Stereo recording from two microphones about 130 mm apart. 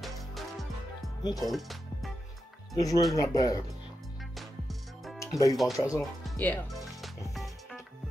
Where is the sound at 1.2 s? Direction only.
30° left (ahead or behind).